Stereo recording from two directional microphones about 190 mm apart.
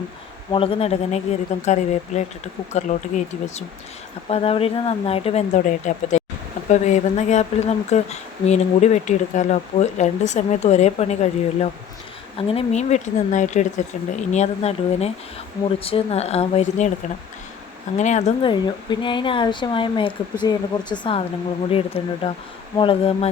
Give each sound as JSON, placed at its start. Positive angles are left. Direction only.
{"t": 0.5, "sound": "speech", "side_deg": 30}
{"t": 17.9, "sound": "speech", "side_deg": 40}
{"t": 18.6, "sound": "speech", "side_deg": 25}